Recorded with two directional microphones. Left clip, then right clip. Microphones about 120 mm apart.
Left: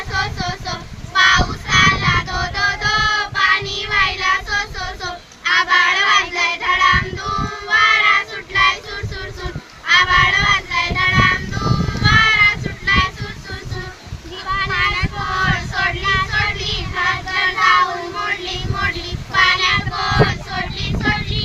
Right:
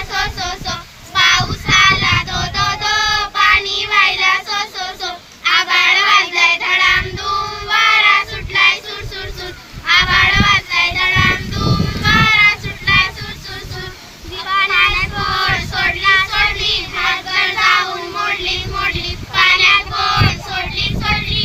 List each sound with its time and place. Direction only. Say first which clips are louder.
0.1 s child singing: right 1 dB; 20° right (ahead or behind)
14.5 s child singing: right 5 dB; 20° right (ahead or behind)